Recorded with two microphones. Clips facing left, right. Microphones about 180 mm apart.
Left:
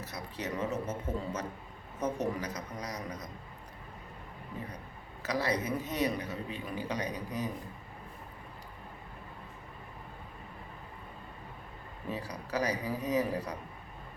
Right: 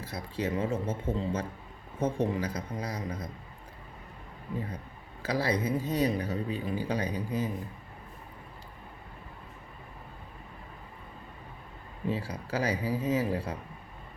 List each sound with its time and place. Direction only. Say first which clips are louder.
0.0 s speech: right 5 dB; 30° right (ahead or behind)
5.2 s speech: right 3 dB; 30° right (ahead or behind)
12.1 s speech: even; 30° right (ahead or behind)